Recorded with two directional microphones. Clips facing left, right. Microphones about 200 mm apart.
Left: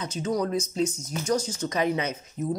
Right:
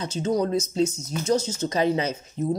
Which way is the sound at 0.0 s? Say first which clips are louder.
Right 3 dB; 25° right (ahead or behind).